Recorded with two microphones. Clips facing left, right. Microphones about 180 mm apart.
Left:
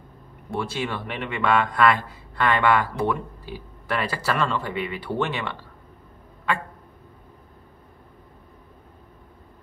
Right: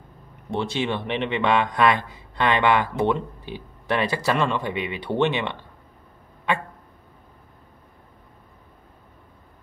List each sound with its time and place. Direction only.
0.5 s a man's voice: 25° right (ahead or behind)